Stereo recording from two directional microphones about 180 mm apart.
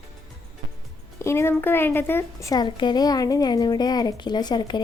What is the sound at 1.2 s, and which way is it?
A woman's voice, 15° left (ahead or behind).